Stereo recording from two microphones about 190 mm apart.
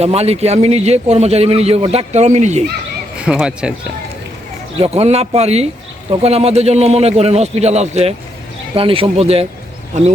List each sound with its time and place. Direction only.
0.0 s a man's voice: 35° right (ahead or behind)
3.2 s speech: 5° right (ahead or behind)
4.8 s a man's voice: 35° right (ahead or behind)